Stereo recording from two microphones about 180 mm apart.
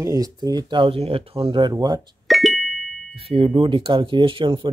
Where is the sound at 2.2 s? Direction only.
Centre (ahead or behind).